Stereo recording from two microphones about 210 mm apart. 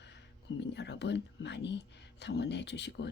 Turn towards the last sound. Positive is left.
turn(degrees=55)  # may be behind; listen again after turning